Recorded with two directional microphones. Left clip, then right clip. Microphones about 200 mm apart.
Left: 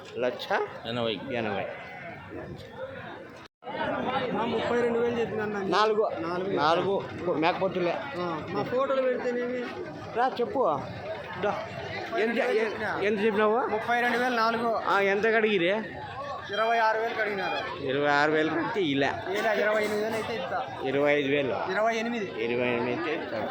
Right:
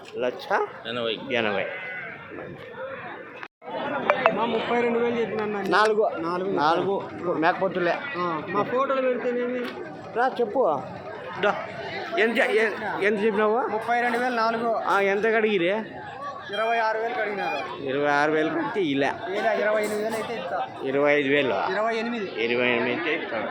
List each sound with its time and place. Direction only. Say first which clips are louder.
0.2 s speech: right 3 dB; centre (ahead or behind)
0.9 s speech: right 2 dB; 65° left (ahead or behind)
1.3 s speech: right 6 dB; centre (ahead or behind)
4.4 s a man's voice: right 3 dB; 30° right (ahead or behind)
5.7 s speech: right 4 dB; 5° right (ahead or behind)
8.2 s a man's voice: right 5 dB; 30° right (ahead or behind)
10.2 s speech: right 3 dB; 5° right (ahead or behind)
21.7 s speech: right 1 dB; 15° right (ahead or behind)
22.4 s speech: right 5 dB; 5° left (ahead or behind)